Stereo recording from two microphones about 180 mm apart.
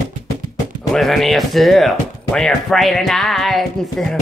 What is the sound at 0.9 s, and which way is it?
Music, centre (ahead or behind).